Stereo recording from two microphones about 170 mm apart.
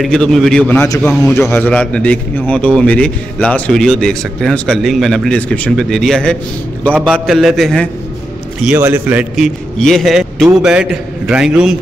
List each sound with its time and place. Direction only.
0.0 s a man's voice: 5° left (ahead or behind)
0.8 s a man's voice: 20° left (ahead or behind)
1.5 s a man's voice: 10° left (ahead or behind)
8.7 s a man's voice: 10° right (ahead or behind)
9.8 s a man's voice: 5° left (ahead or behind)